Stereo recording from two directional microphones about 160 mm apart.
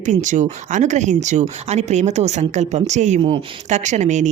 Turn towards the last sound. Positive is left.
turn(degrees=-50)  # may be behind; listen again after turning